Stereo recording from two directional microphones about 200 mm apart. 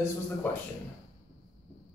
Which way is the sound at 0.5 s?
10° left (ahead or behind).